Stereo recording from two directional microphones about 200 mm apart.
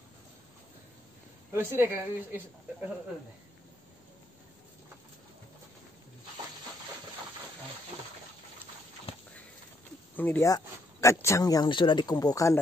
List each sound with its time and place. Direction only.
1.5 s a woman's voice: 10° right (ahead or behind)
9.1 s a sound: 30° left (ahead or behind)
10.1 s speech: 10° left (ahead or behind)